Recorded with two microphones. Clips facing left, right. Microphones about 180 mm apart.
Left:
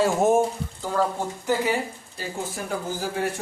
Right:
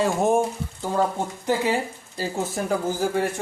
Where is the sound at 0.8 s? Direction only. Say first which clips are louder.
Right 1 dB; 20° right (ahead or behind).